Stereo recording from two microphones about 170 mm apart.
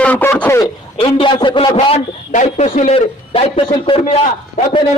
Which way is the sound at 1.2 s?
30° left (ahead or behind).